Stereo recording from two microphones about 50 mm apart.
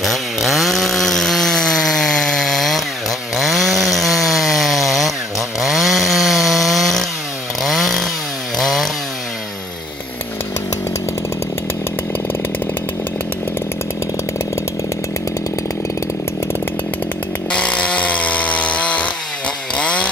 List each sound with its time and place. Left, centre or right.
0.0 s chainsaw: centre
17.5 s chainsaw: left